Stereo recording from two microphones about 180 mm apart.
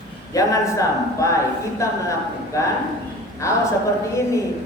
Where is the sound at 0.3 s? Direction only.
20° left (ahead or behind).